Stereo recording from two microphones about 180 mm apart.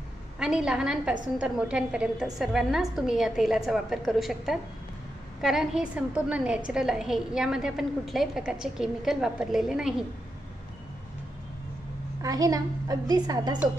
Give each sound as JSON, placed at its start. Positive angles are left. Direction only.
{"t": 0.4, "sound": "a woman's voice", "side_deg": -5}
{"t": 12.2, "sound": "a woman's voice", "side_deg": -20}